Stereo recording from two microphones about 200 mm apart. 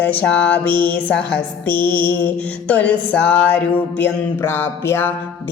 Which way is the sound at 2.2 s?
5° left (ahead or behind).